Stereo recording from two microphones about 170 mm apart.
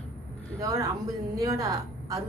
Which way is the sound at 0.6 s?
20° right (ahead or behind).